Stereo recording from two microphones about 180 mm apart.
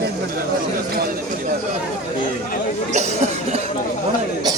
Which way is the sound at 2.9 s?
40° right (ahead or behind).